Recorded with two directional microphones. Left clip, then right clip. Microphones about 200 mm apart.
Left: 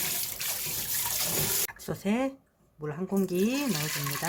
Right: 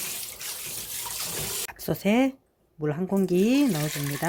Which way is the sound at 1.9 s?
30° right (ahead or behind).